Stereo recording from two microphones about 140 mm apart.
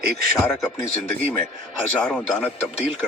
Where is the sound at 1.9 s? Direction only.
10° left (ahead or behind).